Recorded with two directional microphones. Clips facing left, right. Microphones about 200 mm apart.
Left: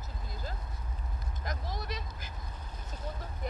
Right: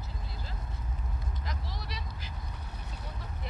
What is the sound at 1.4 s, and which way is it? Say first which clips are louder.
Vehicle: left 6 dB; 50° left (ahead or behind).